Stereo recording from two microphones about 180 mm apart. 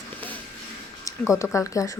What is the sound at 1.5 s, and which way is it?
Speech, 15° left (ahead or behind).